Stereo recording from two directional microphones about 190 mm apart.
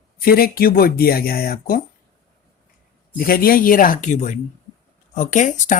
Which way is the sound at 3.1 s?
50° left (ahead or behind).